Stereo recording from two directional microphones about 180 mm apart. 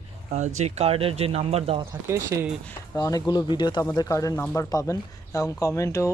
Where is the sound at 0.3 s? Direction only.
40° right (ahead or behind).